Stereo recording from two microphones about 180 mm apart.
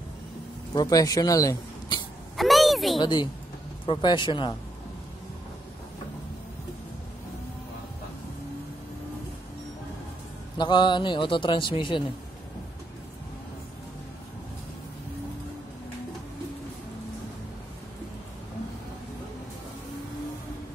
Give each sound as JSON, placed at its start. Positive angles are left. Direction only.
{"t": 0.7, "sound": "speech", "side_deg": 20}
{"t": 2.3, "sound": "speech", "side_deg": 0}
{"t": 3.0, "sound": "a man's voice", "side_deg": 25}
{"t": 10.6, "sound": "a man's voice", "side_deg": 25}